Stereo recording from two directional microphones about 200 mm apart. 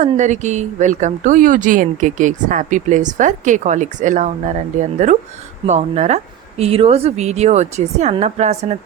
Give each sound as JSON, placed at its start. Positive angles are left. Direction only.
{"t": 0.0, "sound": "speech", "side_deg": -35}